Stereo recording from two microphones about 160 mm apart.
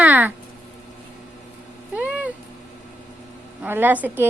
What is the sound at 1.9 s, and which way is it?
Cat, 10° right (ahead or behind).